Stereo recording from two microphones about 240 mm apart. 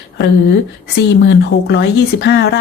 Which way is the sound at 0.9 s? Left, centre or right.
Left.